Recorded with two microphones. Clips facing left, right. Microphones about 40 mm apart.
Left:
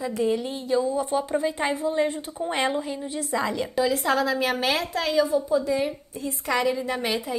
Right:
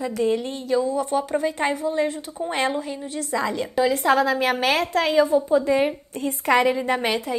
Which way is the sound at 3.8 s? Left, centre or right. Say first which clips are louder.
Right 5 dB; right.